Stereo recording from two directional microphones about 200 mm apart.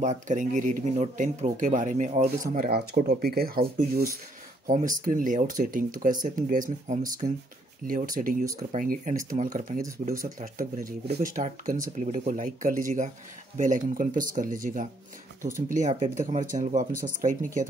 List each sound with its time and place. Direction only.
0.0 s speech: 40° right (ahead or behind)